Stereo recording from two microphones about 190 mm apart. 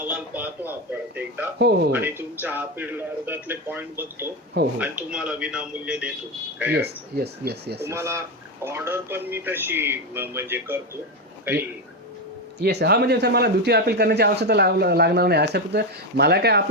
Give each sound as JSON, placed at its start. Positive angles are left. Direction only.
{"t": 0.1, "sound": "a man's voice", "side_deg": -10}
{"t": 1.5, "sound": "speech", "side_deg": -60}
{"t": 1.9, "sound": "a man's voice", "side_deg": -10}
{"t": 6.7, "sound": "speech", "side_deg": -60}
{"t": 7.9, "sound": "a man's voice", "side_deg": -15}
{"t": 12.5, "sound": "speech", "side_deg": -60}